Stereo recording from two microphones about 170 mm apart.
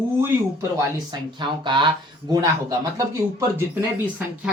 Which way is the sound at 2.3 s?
20° right (ahead or behind).